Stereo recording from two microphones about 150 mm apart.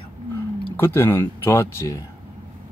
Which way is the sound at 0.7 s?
15° left (ahead or behind).